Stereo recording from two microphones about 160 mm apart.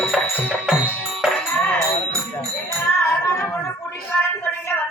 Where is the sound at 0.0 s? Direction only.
5° left (ahead or behind).